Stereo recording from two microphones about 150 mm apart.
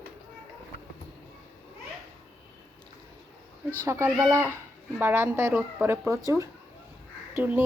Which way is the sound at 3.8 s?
20° right (ahead or behind).